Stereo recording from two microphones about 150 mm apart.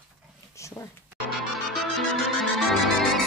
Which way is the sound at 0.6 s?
20° left (ahead or behind).